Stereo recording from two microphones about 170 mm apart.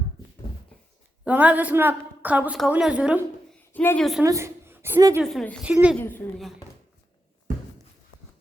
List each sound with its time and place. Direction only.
1.2 s a woman's voice: 10° right (ahead or behind)
3.7 s a woman's voice: 10° left (ahead or behind)
4.2 s a woman's voice: 15° right (ahead or behind)
5.2 s a woman's voice: centre (ahead or behind)
6.0 s a woman's voice: 10° left (ahead or behind)